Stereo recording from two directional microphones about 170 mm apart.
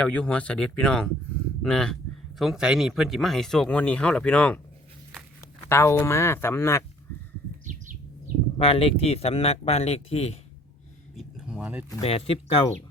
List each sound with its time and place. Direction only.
0.0 s speech: 5° left (ahead or behind)
5.6 s speech: 15° left (ahead or behind)
7.6 s bird: 50° right (ahead or behind)
8.5 s speech: 35° left (ahead or behind)
11.2 s a sound: 5° right (ahead or behind)
12.0 s speech: 35° left (ahead or behind)